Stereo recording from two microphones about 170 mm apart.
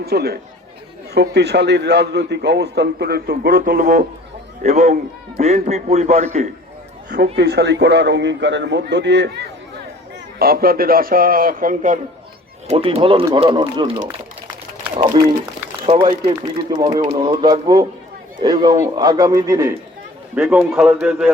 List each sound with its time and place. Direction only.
0.0 s a man's voice: 70° right (ahead or behind)
4.6 s speech: 45° right (ahead or behind)
7.3 s a man's voice: 75° right (ahead or behind)
10.3 s a man's voice: 60° right (ahead or behind)
12.6 s a man's voice: 35° right (ahead or behind); by 19.7 s 20° right (ahead or behind)
20.3 s a man's voice: 10° right (ahead or behind)